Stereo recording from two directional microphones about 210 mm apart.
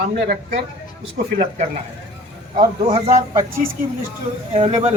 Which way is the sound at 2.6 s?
30° right (ahead or behind).